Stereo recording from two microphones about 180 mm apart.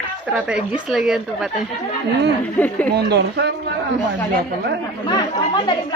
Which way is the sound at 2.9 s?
70° right (ahead or behind).